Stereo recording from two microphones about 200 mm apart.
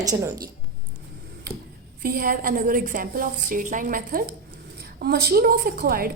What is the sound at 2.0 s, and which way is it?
A woman's voice, 45° right (ahead or behind).